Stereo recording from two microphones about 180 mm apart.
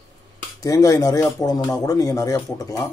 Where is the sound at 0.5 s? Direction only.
20° left (ahead or behind).